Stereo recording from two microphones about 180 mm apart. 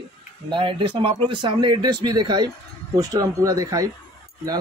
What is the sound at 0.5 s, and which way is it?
A man's voice, 30° right (ahead or behind).